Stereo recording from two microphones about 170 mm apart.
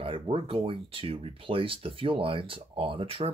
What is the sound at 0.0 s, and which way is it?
Speech, 30° right (ahead or behind).